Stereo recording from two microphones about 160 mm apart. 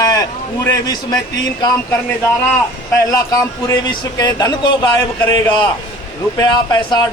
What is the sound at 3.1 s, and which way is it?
Speech, 20° left (ahead or behind).